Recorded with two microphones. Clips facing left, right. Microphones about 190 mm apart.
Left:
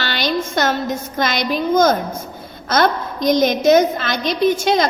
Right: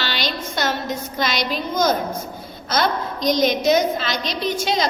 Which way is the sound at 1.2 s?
50° left (ahead or behind).